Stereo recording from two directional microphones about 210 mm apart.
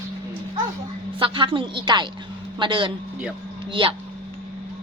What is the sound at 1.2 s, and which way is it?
A woman's voice, 25° right (ahead or behind).